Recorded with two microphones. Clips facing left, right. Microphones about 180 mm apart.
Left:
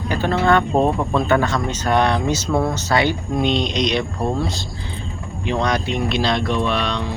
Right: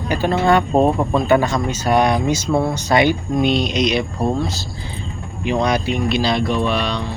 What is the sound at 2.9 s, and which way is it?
Speech, 15° right (ahead or behind).